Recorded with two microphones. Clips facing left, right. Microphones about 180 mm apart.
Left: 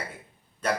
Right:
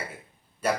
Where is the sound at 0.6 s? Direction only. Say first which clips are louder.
Right 1 dB; 10° right (ahead or behind).